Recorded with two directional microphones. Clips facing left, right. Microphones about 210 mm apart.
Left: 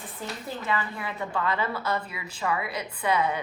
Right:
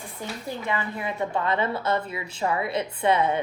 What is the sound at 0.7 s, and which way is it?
Speech, 20° right (ahead or behind).